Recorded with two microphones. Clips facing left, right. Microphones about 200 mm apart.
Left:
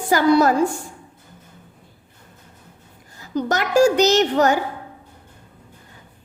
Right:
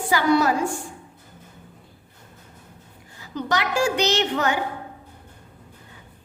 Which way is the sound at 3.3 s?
45° left (ahead or behind).